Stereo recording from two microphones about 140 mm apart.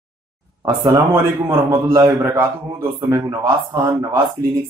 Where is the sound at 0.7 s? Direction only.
25° right (ahead or behind).